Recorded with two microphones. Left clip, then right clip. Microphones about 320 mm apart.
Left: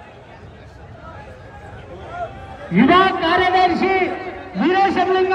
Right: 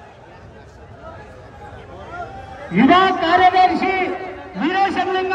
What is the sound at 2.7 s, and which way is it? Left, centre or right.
A man's voice, right.